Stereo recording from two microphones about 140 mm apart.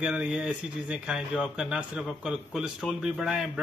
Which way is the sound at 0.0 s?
5° right (ahead or behind).